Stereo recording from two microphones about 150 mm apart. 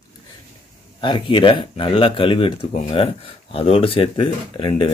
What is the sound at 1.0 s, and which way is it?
Speech, 35° left (ahead or behind).